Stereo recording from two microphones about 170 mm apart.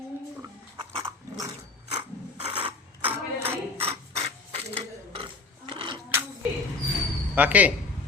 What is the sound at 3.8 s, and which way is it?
Mechanisms, 35° right (ahead or behind).